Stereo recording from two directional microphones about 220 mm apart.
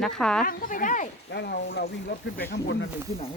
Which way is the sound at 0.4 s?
40° left (ahead or behind).